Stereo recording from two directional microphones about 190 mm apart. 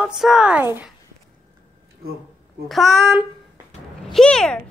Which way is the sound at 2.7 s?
Centre (ahead or behind).